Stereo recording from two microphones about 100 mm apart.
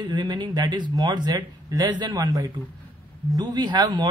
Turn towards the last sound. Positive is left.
turn(degrees=-45)  # may be behind; listen again after turning